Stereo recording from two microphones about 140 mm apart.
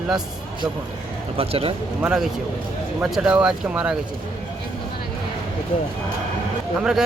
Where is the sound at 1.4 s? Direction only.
45° right (ahead or behind).